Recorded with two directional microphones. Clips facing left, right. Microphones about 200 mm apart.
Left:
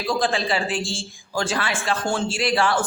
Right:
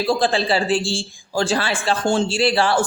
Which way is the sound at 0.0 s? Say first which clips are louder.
Right 4 dB; 30° right (ahead or behind).